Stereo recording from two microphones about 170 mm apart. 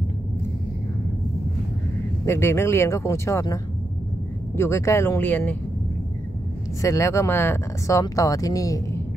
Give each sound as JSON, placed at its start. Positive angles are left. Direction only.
{"t": 2.2, "sound": "speech", "side_deg": 15}
{"t": 6.8, "sound": "speech", "side_deg": 15}